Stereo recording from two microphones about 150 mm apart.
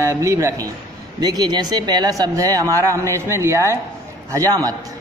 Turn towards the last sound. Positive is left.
turn(degrees=-25)  # may be behind; listen again after turning